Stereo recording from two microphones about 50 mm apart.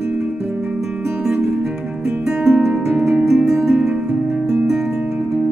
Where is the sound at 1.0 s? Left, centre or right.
Centre.